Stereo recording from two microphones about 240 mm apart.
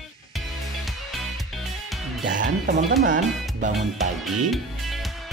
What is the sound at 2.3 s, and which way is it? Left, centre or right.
Speech, right.